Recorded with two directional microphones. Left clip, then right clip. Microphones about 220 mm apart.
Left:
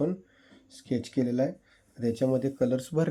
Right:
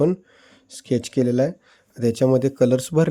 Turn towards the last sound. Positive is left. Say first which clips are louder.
# right 9 dB
turn(degrees=-35)  # may be behind; listen again after turning